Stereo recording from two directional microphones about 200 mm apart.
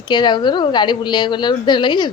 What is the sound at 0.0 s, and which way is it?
A woman's voice, 20° left (ahead or behind).